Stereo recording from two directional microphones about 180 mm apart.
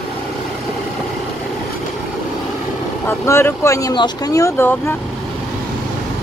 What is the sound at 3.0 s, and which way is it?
Speech, 15° left (ahead or behind).